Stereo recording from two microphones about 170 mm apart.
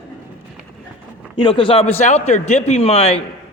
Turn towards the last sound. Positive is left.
turn(degrees=35)  # may be behind; listen again after turning